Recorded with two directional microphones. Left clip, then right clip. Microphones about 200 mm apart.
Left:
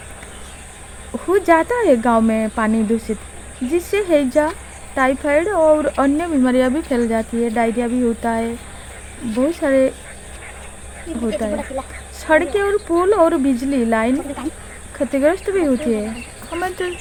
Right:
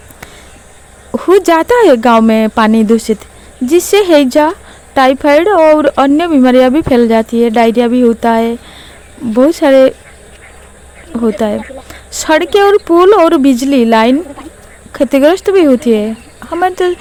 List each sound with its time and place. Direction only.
1.1 s speech: 45° right (ahead or behind)
11.2 s speech: 45° right (ahead or behind)